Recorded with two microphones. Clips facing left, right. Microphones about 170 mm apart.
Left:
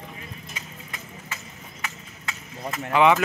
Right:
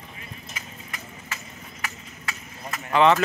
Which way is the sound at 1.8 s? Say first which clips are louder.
Even; 25° left (ahead or behind).